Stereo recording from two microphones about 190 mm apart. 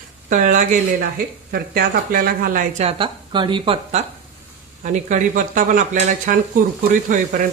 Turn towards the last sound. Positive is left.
turn(degrees=-45)  # may be behind; listen again after turning